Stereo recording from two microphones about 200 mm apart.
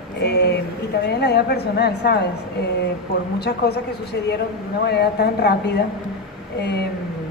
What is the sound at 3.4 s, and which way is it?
Speech, 55° left (ahead or behind).